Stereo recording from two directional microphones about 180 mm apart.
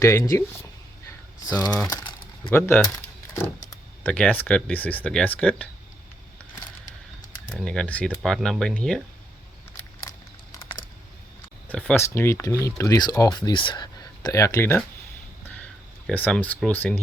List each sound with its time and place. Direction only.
0.0 s speech: 15° left (ahead or behind)
1.9 s typing: 20° left (ahead or behind)
2.5 s speech: 10° left (ahead or behind)
7.6 s speech: 5° left (ahead or behind)
11.7 s speech: 10° left (ahead or behind)
16.0 s speech: 5° left (ahead or behind)